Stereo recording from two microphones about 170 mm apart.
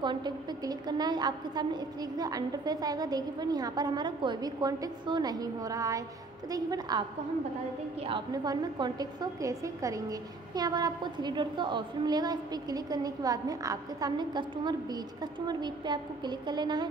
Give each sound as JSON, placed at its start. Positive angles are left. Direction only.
{"t": 0.0, "sound": "a woman's voice", "side_deg": -25}
{"t": 8.1, "sound": "a woman's voice", "side_deg": -25}